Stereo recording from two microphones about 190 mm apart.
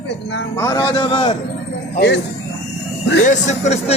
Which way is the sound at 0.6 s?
20° left (ahead or behind).